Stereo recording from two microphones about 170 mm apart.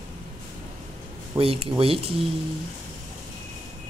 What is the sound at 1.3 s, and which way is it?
Speech, 35° right (ahead or behind).